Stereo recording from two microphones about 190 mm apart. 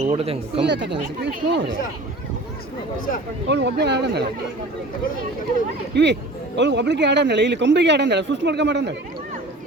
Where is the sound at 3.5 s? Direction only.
60° right (ahead or behind).